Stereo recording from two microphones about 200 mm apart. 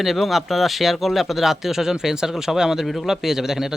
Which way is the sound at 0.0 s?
Centre (ahead or behind).